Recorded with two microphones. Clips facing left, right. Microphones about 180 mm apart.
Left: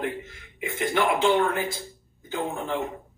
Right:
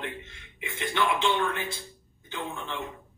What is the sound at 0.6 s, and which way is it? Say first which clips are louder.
Speech: left 4 dB; 25° left (ahead or behind).